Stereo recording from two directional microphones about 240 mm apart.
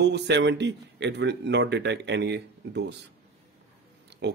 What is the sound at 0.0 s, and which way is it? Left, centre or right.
Speech, right.